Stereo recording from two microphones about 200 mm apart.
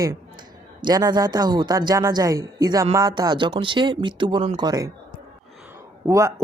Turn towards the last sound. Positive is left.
turn(degrees=-15)  # may be behind; listen again after turning